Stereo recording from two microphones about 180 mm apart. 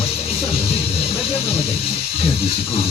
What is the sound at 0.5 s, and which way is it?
Speech, 35° left (ahead or behind).